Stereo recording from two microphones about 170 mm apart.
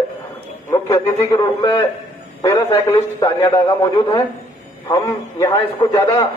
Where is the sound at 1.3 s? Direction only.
25° left (ahead or behind).